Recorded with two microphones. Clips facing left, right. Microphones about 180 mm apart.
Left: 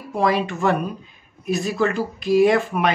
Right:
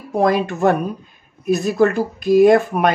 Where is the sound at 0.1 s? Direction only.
50° right (ahead or behind).